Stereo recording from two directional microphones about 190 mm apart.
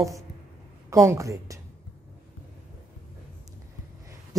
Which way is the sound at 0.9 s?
15° right (ahead or behind).